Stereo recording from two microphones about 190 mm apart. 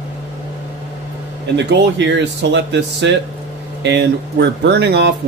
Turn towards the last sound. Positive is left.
turn(degrees=-60)  # may be behind; listen again after turning